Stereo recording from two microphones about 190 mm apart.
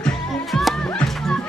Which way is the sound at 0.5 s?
Centre (ahead or behind).